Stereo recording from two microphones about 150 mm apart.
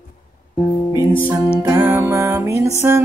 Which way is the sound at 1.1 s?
15° left (ahead or behind).